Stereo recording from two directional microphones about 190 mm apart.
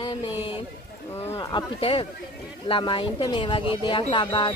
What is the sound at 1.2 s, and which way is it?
A woman's voice, 15° left (ahead or behind).